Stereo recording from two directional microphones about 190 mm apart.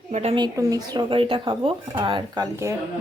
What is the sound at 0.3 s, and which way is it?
Speech, 20° right (ahead or behind).